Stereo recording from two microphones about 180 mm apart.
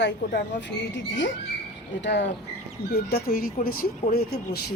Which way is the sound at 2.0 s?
75° left (ahead or behind).